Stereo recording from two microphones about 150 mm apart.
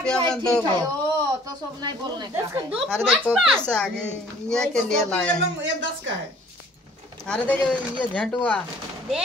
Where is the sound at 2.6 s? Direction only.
Centre (ahead or behind).